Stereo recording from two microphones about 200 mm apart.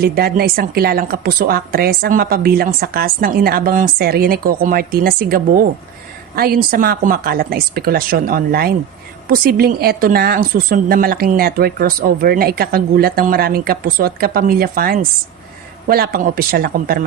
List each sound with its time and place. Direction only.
0.0 s speech: 50° right (ahead or behind)